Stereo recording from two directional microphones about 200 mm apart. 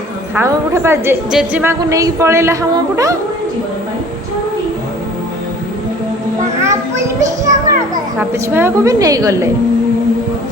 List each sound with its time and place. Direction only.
0.3 s a woman's voice: 15° right (ahead or behind)
1.8 s a woman's voice: 15° right (ahead or behind)
7.2 s children playing: 15° right (ahead or behind)
8.2 s a woman's voice: 10° right (ahead or behind)